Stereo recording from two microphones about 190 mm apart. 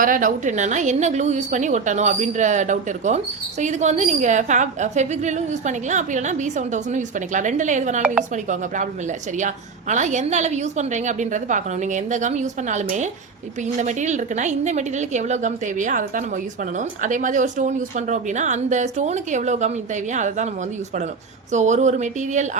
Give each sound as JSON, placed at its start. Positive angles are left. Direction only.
{"t": 0.0, "sound": "a woman's voice", "side_deg": -45}
{"t": 21.5, "sound": "a woman's voice", "side_deg": -40}